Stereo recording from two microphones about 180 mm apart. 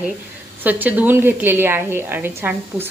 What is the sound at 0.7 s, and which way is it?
A woman's voice, 10° right (ahead or behind).